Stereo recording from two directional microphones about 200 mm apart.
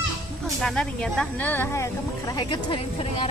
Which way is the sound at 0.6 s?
Centre (ahead or behind).